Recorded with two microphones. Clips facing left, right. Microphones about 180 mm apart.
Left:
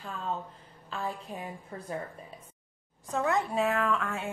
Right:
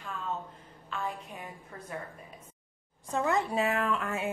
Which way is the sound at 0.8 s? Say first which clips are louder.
Left 1 dB; 35° left (ahead or behind).